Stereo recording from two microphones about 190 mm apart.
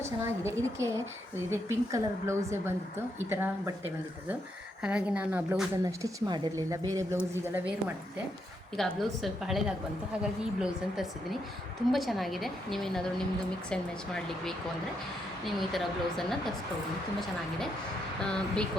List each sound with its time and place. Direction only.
0.0 s a woman's voice: 15° right (ahead or behind)
5.8 s a woman's voice: 20° right (ahead or behind)
8.7 s a woman's voice: centre (ahead or behind)
18.2 s a woman's voice: 5° left (ahead or behind)